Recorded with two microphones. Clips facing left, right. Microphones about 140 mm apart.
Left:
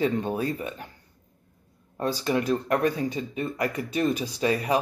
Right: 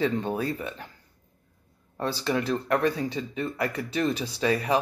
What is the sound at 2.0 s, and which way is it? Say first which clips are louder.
Speech: left 2 dB; 15° left (ahead or behind).